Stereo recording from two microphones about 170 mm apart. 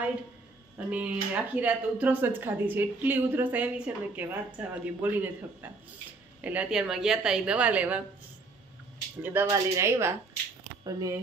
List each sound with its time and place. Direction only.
0.7 s speech: 10° right (ahead or behind)
9.2 s speech: 10° right (ahead or behind)